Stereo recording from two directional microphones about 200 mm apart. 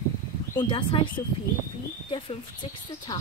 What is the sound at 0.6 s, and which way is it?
Speech, 25° left (ahead or behind).